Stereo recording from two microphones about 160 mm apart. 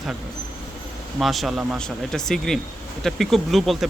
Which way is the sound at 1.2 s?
Centre (ahead or behind).